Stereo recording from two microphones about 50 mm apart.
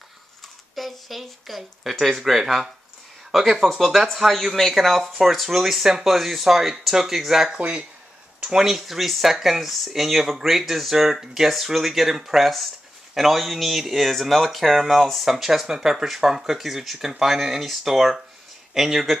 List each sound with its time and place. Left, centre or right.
0.7 s speech: centre
7.5 s speech: right
8.4 s speech: centre